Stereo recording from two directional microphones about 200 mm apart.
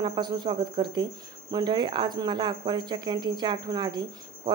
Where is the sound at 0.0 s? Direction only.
20° right (ahead or behind).